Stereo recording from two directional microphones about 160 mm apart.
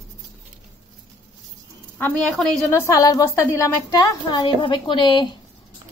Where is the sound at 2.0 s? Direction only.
10° left (ahead or behind).